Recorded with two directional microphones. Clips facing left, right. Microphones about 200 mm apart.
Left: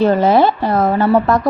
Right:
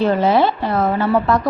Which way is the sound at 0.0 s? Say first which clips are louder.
Left 3 dB; 45° left (ahead or behind).